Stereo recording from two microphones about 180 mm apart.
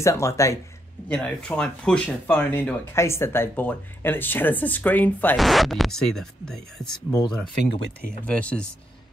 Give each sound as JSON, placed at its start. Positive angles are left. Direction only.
{"t": 0.0, "sound": "speech", "side_deg": 15}
{"t": 1.0, "sound": "speech", "side_deg": 5}
{"t": 7.1, "sound": "speech", "side_deg": 15}
{"t": 8.3, "sound": "speech", "side_deg": 5}